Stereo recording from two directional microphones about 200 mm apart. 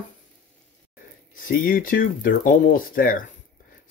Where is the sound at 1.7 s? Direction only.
45° left (ahead or behind).